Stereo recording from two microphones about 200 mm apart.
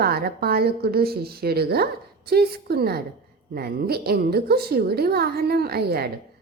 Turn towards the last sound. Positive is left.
turn(degrees=-50)  # may be behind; listen again after turning